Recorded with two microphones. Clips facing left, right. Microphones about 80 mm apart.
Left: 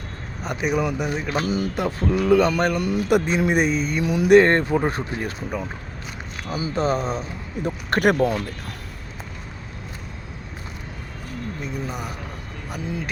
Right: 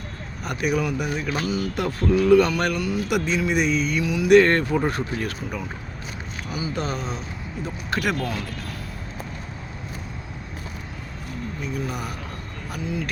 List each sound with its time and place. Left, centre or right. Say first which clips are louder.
0.4 s speech: left 1 dB; left
1.7 s speech: right 1 dB; left
2.8 s speech: left 4 dB; left
4.3 s speech: left 1 dB; left
7.6 s speech: left 6 dB; left